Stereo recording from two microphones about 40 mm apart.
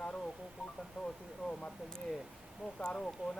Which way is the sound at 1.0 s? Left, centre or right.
Centre.